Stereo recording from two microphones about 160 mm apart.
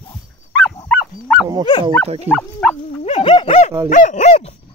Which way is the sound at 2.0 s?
40° right (ahead or behind).